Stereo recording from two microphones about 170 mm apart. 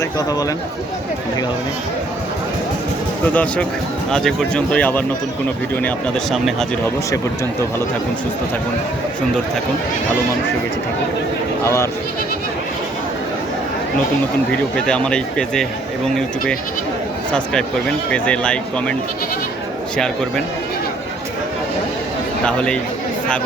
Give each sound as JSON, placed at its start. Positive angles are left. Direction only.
{"t": 0.0, "sound": "speech", "side_deg": 20}
{"t": 3.3, "sound": "speech", "side_deg": 5}
{"t": 11.6, "sound": "speech", "side_deg": 15}
{"t": 14.5, "sound": "speech", "side_deg": 5}
{"t": 17.3, "sound": "speech", "side_deg": 5}
{"t": 22.4, "sound": "speech", "side_deg": 5}